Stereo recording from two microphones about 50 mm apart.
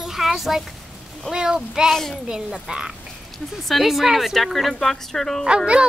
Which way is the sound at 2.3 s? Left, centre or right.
Centre.